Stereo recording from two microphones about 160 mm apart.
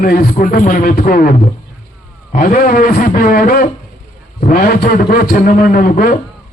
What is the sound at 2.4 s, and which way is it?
A man's voice, 60° left (ahead or behind).